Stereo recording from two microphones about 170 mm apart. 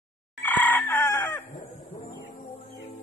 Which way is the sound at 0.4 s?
10° left (ahead or behind).